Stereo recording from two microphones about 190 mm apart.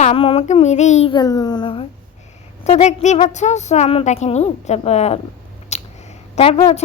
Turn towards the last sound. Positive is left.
turn(degrees=30)  # may be behind; listen again after turning